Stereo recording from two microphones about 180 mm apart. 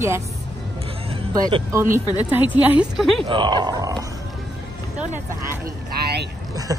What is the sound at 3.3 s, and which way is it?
Speech, 25° right (ahead or behind).